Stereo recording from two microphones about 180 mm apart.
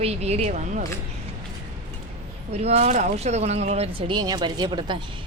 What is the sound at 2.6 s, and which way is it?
Speech, 40° right (ahead or behind).